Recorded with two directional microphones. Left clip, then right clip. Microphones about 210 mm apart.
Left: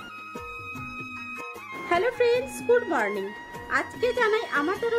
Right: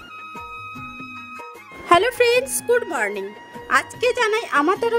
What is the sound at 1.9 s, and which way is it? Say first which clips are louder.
A woman's voice: right 7 dB; 45° right (ahead or behind).